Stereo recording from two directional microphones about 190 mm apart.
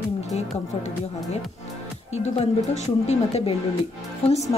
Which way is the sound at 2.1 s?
35° left (ahead or behind).